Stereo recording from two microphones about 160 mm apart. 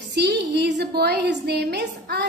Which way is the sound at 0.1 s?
90° right.